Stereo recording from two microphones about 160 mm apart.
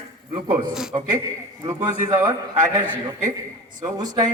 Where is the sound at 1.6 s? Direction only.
20° right (ahead or behind).